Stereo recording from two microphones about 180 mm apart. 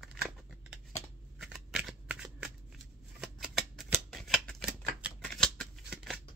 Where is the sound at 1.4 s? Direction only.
Centre (ahead or behind).